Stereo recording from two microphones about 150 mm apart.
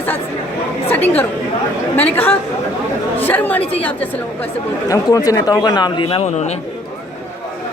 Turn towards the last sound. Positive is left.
turn(degrees=45)  # may be behind; listen again after turning